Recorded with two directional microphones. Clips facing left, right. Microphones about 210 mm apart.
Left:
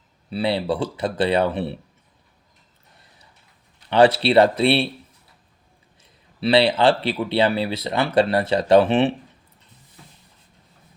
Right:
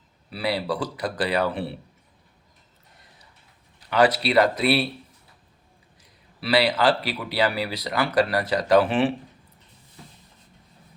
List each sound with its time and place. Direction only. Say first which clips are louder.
0.3 s speech: left 4 dB; 25° left (ahead or behind)
3.8 s speech: left 5 dB; 30° left (ahead or behind)
6.0 s speech: left 10 dB; 25° left (ahead or behind)